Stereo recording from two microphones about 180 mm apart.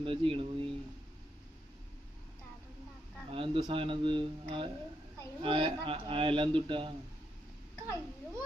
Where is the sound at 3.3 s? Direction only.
25° right (ahead or behind).